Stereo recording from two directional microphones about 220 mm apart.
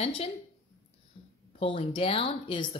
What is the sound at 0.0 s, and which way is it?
Speech, 25° left (ahead or behind).